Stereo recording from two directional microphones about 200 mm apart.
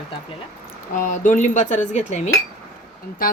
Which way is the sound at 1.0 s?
40° left (ahead or behind).